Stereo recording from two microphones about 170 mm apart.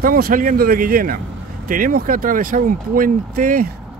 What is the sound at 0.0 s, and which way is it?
Speech, 55° right (ahead or behind).